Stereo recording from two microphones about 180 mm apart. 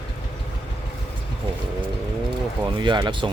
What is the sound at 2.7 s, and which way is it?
Speech, 25° right (ahead or behind).